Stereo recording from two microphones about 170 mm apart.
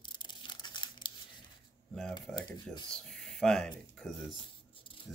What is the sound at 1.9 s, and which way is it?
Speech, centre (ahead or behind).